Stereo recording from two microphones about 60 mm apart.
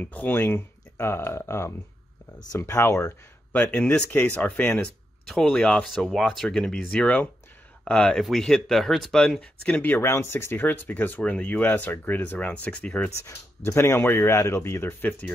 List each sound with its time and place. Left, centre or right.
0.0 s speech: left
3.7 s speech: centre
4.1 s speech: left
4.4 s speech: left; by 9.1 s centre
9.4 s speech: centre
9.8 s speech: left
13.2 s speech: left
14.3 s speech: left
14.6 s speech: left
15.0 s speech: left